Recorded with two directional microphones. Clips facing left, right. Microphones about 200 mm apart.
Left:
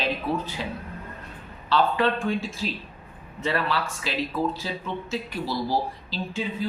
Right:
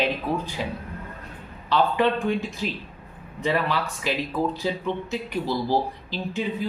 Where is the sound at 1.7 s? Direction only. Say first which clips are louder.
Right 1 dB; 15° right (ahead or behind).